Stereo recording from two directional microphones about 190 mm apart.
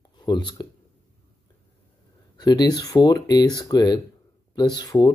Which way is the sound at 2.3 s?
20° left (ahead or behind).